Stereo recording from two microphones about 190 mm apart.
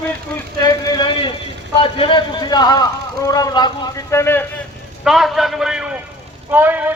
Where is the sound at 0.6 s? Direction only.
20° left (ahead or behind).